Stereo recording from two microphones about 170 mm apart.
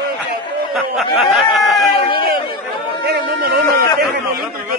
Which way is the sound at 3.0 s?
75° right (ahead or behind).